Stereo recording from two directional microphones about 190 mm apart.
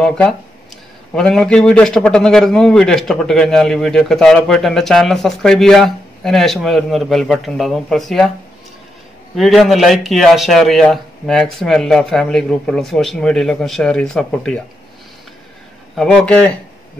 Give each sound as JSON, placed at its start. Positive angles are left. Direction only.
{"t": 0.0, "sound": "a man's voice", "side_deg": 5}
{"t": 9.3, "sound": "a man's voice", "side_deg": 0}
{"t": 15.9, "sound": "a man's voice", "side_deg": 5}